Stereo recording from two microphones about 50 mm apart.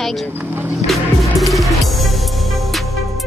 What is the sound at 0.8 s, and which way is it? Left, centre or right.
Music, centre.